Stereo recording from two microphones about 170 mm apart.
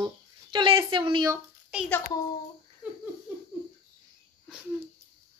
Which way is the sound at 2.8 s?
5° right (ahead or behind).